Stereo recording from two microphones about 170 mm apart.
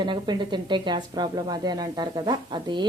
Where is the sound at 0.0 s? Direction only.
25° right (ahead or behind).